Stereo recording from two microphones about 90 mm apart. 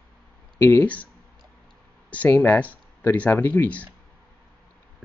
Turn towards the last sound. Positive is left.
turn(degrees=15)  # may be behind; listen again after turning